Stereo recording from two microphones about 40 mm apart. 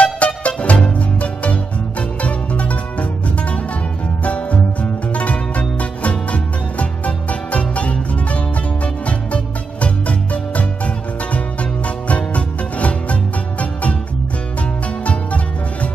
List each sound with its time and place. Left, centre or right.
0.0 s music: left
12.1 s music: left
15.0 s music: left